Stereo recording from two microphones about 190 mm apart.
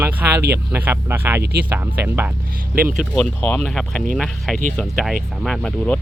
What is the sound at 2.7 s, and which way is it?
Speech, 50° right (ahead or behind).